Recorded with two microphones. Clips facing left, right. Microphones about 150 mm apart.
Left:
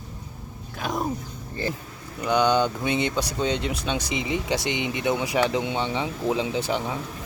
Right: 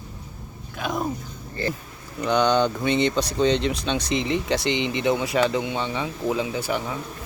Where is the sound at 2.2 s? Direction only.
10° left (ahead or behind).